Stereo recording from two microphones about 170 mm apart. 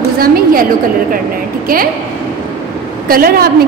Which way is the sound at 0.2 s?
55° right (ahead or behind).